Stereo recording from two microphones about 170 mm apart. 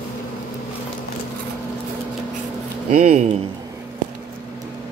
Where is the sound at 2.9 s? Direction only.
45° right (ahead or behind).